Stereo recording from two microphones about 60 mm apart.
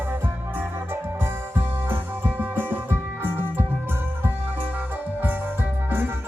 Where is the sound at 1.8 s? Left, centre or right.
Right.